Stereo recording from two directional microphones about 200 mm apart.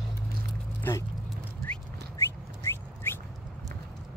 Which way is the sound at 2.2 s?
15° left (ahead or behind).